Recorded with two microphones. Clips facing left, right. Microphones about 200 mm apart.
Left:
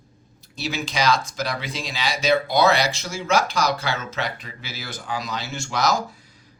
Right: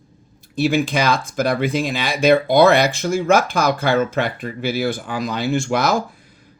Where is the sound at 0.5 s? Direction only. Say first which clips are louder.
Right 10 dB; 55° right (ahead or behind).